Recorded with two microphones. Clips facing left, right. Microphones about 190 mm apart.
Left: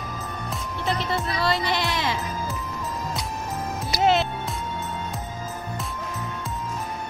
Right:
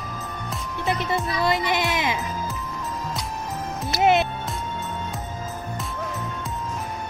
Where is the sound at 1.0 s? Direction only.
15° right (ahead or behind).